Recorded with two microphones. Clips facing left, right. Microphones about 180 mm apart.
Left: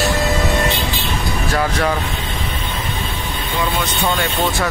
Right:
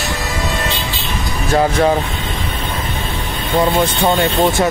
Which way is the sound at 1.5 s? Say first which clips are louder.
Right 7 dB; 30° right (ahead or behind).